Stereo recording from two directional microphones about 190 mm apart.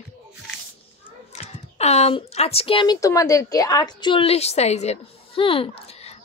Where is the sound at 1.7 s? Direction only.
35° left (ahead or behind).